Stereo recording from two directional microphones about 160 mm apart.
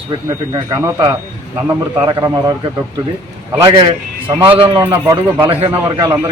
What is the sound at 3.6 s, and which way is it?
Speech, 30° right (ahead or behind).